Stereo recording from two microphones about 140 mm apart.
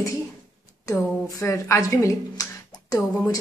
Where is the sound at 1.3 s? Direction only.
20° left (ahead or behind).